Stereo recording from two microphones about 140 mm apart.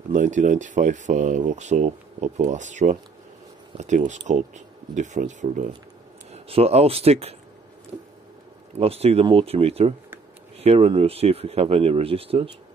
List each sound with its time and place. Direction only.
0.1 s speech: 65° right (ahead or behind)
6.3 s speech: 45° right (ahead or behind)
8.7 s speech: 45° right (ahead or behind)